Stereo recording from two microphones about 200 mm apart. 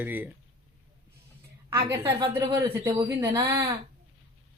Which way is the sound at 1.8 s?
15° right (ahead or behind).